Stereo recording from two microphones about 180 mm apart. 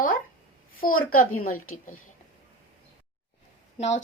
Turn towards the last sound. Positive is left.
turn(degrees=40)  # may be behind; listen again after turning